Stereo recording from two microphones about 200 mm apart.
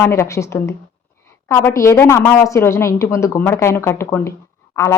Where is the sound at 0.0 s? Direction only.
15° left (ahead or behind).